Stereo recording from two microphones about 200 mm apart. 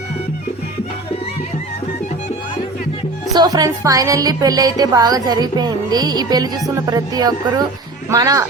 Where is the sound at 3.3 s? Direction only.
20° right (ahead or behind).